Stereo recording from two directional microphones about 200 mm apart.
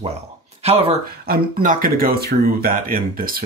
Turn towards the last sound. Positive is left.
turn(degrees=-45)  # may be behind; listen again after turning